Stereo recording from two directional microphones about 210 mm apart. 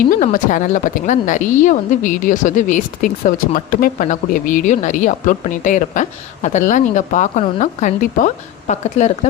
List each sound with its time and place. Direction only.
0.1 s a woman's voice: 40° left (ahead or behind)